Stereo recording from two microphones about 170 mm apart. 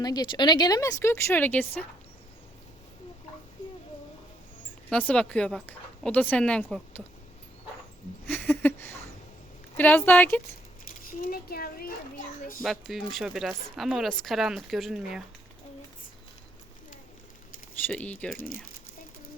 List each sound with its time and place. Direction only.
0.0 s speech: 25° left (ahead or behind)
4.9 s speech: 5° left (ahead or behind)
8.3 s a sound: 10° left (ahead or behind)
9.7 s speech: 10° left (ahead or behind)
11.2 s a child's voice: 60° left (ahead or behind)
12.6 s speech: centre (ahead or behind)
17.8 s speech: 10° left (ahead or behind)
18.3 s a child's voice: 60° left (ahead or behind)